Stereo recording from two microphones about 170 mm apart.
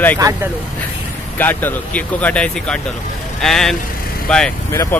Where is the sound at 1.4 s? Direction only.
10° left (ahead or behind).